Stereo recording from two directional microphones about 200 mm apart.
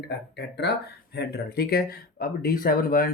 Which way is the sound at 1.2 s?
55° left (ahead or behind).